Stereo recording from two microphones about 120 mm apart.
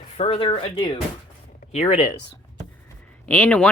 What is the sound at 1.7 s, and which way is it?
Speech, 65° left (ahead or behind).